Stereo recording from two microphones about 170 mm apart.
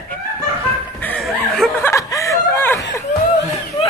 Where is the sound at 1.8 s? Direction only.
15° left (ahead or behind).